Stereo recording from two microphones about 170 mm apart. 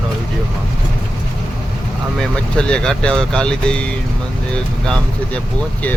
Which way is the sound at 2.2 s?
5° left (ahead or behind).